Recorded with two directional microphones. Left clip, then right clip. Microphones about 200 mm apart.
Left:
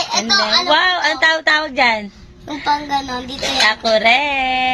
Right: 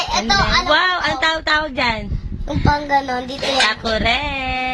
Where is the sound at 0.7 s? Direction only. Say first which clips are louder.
Left 2 dB; centre (ahead or behind).